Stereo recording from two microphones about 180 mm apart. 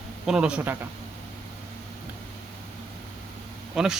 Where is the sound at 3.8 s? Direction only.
5° right (ahead or behind).